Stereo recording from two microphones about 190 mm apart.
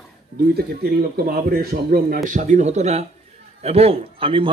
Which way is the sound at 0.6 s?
55° right (ahead or behind).